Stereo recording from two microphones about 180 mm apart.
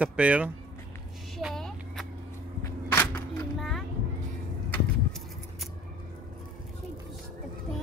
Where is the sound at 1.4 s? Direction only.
Centre (ahead or behind).